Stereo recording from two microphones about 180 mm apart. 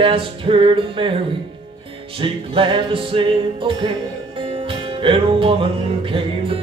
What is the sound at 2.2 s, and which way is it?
Music, 30° right (ahead or behind).